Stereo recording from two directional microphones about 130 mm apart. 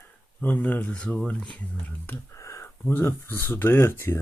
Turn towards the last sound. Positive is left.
turn(degrees=20)  # may be behind; listen again after turning